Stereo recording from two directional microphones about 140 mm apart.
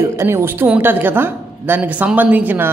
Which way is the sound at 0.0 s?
20° right (ahead or behind).